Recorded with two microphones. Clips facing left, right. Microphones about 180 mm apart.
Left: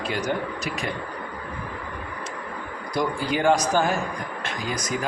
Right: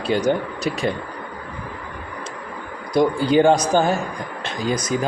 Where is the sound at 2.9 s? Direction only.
30° right (ahead or behind).